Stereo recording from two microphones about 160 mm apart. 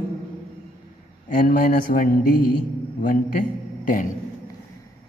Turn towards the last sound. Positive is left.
turn(degrees=55)  # may be behind; listen again after turning